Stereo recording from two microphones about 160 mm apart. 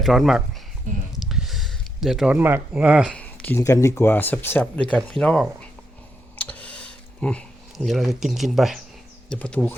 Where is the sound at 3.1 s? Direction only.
10° left (ahead or behind).